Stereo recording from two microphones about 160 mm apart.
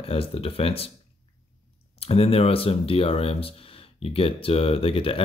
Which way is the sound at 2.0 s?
40° left (ahead or behind).